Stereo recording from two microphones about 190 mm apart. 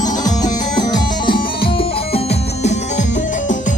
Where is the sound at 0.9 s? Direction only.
25° left (ahead or behind).